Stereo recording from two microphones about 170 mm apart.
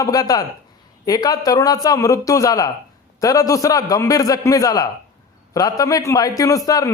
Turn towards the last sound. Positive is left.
turn(degrees=20)  # may be behind; listen again after turning